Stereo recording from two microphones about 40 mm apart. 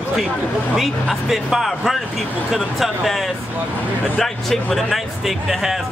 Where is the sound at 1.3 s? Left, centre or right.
Centre.